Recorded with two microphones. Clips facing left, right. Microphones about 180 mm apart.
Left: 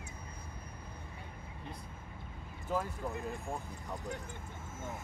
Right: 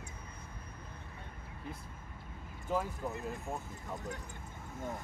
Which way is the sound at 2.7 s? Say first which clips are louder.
Right 1 dB; 5° right (ahead or behind).